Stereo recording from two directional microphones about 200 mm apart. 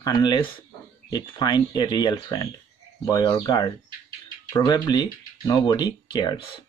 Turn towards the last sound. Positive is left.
turn(degrees=20)  # may be behind; listen again after turning